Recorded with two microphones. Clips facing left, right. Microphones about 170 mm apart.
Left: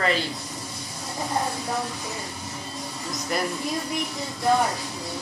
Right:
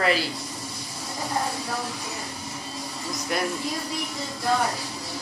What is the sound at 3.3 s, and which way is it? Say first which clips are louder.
Speech: even; centre (ahead or behind).